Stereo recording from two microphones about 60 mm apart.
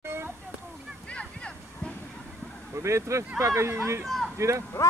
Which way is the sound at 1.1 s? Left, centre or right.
Centre.